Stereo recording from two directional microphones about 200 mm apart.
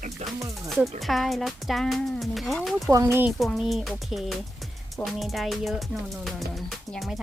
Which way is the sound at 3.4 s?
Centre (ahead or behind).